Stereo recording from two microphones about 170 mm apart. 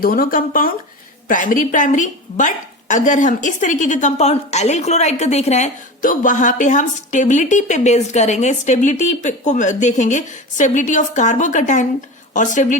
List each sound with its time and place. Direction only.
0.0 s a woman's voice: 60° left (ahead or behind)